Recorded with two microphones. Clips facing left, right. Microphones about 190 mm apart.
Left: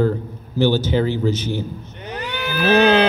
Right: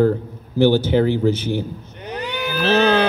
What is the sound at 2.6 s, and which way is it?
Speech, 15° left (ahead or behind).